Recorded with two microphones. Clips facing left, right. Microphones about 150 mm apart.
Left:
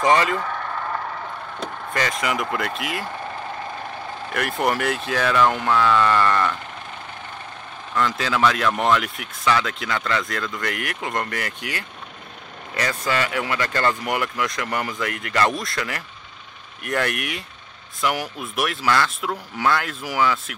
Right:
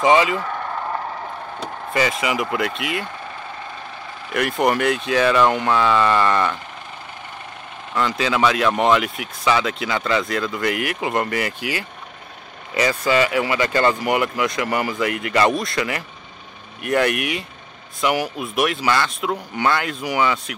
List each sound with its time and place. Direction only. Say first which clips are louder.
0.0 s speech: right 3 dB; 5° right (ahead or behind)
0.6 s vehicle: right 2 dB; 20° right (ahead or behind)
1.6 s speech: right 4 dB; 5° right (ahead or behind)
4.3 s speech: right 4 dB; centre (ahead or behind)
7.9 s speech: right 2 dB; centre (ahead or behind)